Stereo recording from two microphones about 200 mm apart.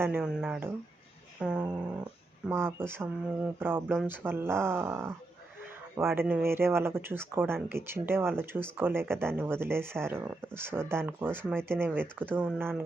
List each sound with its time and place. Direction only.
0.0 s speech: 5° right (ahead or behind)